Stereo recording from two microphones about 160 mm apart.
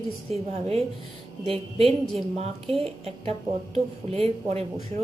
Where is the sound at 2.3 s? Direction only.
40° right (ahead or behind).